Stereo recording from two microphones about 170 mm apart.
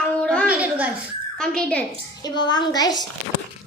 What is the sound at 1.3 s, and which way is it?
Speech, 5° left (ahead or behind).